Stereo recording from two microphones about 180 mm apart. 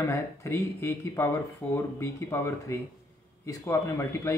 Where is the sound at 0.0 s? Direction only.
15° left (ahead or behind).